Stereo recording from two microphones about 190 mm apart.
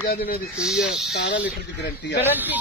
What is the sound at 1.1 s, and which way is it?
Speech, 60° left (ahead or behind).